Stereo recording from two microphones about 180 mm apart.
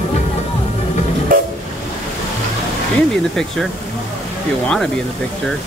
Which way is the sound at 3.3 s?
Centre (ahead or behind).